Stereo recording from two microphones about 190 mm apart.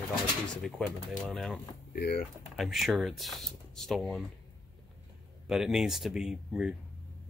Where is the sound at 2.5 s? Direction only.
Centre (ahead or behind).